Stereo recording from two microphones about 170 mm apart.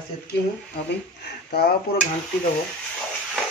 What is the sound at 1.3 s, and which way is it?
Speech, 65° left (ahead or behind).